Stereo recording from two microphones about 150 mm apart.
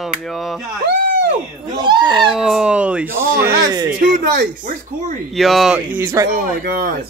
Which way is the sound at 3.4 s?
20° right (ahead or behind).